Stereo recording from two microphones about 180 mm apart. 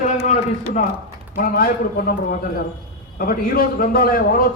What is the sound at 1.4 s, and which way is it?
A man's voice, 50° left (ahead or behind).